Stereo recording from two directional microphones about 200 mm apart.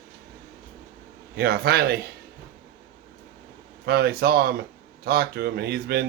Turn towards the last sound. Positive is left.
turn(degrees=-50)  # may be behind; listen again after turning